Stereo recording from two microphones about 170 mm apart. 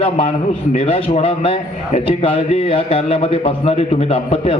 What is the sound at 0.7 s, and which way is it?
A man's voice, 35° left (ahead or behind).